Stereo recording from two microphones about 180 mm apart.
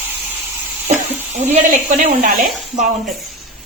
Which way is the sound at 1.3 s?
45° right (ahead or behind).